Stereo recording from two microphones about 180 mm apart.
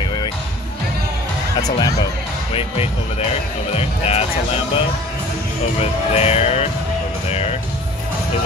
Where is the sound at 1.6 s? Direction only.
20° left (ahead or behind).